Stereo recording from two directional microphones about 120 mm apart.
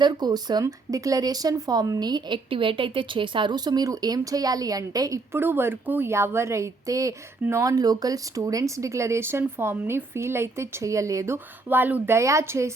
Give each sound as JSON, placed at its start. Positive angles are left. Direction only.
{"t": 0.0, "sound": "speech", "side_deg": -35}
{"t": 11.7, "sound": "speech", "side_deg": -15}